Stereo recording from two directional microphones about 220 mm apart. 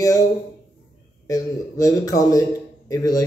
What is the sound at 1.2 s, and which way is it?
A man's voice, 15° left (ahead or behind).